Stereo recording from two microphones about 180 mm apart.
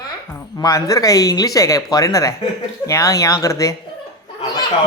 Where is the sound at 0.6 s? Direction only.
20° left (ahead or behind).